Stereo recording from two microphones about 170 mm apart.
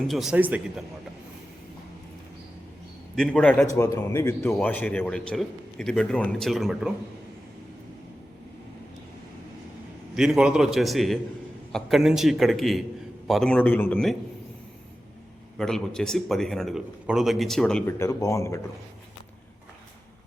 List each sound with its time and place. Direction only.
0.1 s a man's voice: 5° right (ahead or behind)
3.2 s a man's voice: 5° left (ahead or behind)
10.2 s a man's voice: 5° right (ahead or behind)
15.5 s a man's voice: 5° left (ahead or behind)
18.0 s a man's voice: 20° left (ahead or behind)